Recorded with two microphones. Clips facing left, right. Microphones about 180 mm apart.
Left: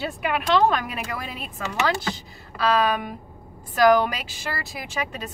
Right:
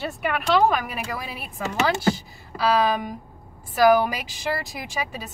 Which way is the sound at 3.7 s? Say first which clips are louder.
Even; 10° right (ahead or behind).